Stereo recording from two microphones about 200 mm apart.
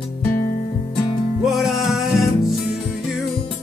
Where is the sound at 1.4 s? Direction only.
Centre (ahead or behind).